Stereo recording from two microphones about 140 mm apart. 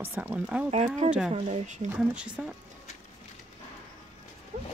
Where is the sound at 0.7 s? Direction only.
55° right (ahead or behind).